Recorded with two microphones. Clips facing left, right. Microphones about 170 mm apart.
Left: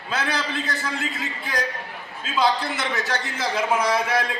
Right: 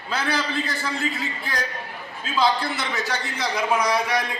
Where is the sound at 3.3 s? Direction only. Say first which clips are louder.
Even; 5° left (ahead or behind).